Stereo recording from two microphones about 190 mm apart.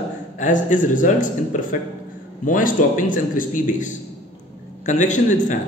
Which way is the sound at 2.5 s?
45° left (ahead or behind).